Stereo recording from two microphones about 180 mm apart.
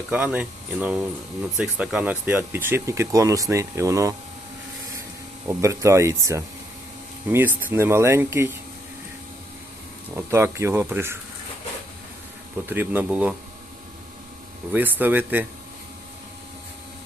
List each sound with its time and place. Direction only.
0.1 s speech: 5° right (ahead or behind)
5.5 s speech: 15° right (ahead or behind)
10.2 s speech: 15° right (ahead or behind)
12.6 s speech: 10° right (ahead or behind)
14.7 s speech: 10° right (ahead or behind)